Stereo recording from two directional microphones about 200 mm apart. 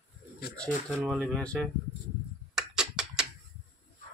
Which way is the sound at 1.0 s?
5° left (ahead or behind).